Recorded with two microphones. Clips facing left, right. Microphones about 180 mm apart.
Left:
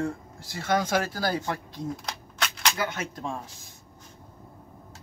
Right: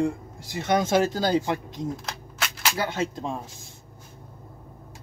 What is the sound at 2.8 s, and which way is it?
Speech, 30° right (ahead or behind).